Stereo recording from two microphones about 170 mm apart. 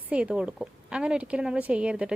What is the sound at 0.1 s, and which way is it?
A woman's voice, 5° right (ahead or behind).